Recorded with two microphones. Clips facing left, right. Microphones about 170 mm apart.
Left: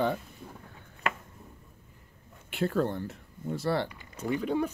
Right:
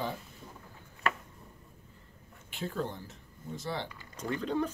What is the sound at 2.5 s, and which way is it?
Speech, 60° left (ahead or behind).